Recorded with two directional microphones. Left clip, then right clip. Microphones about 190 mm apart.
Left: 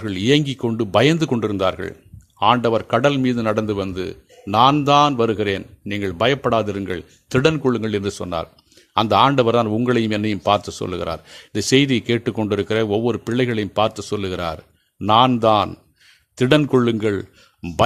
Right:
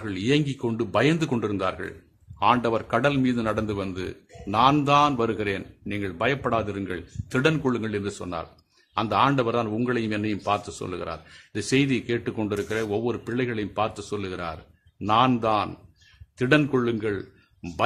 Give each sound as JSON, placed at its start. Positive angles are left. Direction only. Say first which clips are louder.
{"t": 0.0, "sound": "a man's voice", "louder": "left 6 dB", "side_deg": 35}